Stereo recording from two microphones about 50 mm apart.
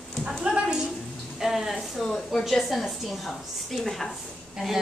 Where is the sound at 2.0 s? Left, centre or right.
Centre.